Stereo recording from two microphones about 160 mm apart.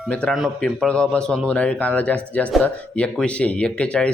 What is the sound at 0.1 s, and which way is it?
Speech, 5° left (ahead or behind).